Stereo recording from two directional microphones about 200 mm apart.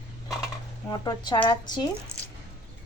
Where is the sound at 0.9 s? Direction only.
20° left (ahead or behind).